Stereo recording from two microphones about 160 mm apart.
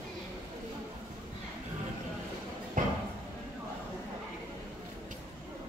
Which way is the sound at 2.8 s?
55° right (ahead or behind).